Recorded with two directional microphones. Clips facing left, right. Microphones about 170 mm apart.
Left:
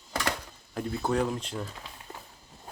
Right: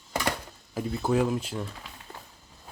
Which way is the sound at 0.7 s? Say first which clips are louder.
Right 2 dB; centre (ahead or behind).